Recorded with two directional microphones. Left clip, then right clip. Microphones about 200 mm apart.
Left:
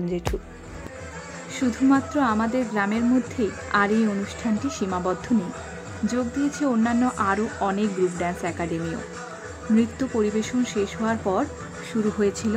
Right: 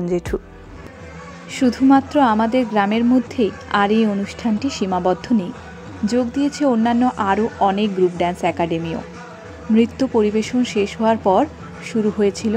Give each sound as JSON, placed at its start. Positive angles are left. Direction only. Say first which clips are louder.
{"t": 1.5, "sound": "speech", "louder": "right 7 dB", "side_deg": -25}